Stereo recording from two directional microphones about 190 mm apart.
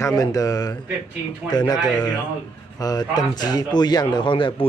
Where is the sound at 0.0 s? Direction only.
20° left (ahead or behind).